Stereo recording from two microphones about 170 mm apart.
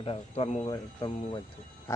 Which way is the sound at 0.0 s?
35° left (ahead or behind).